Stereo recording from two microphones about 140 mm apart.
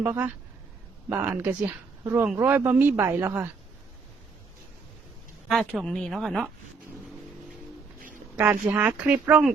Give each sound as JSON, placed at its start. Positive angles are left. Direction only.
{"t": 0.0, "sound": "speech", "side_deg": -15}
{"t": 5.5, "sound": "speech", "side_deg": 0}
{"t": 8.4, "sound": "speech", "side_deg": -15}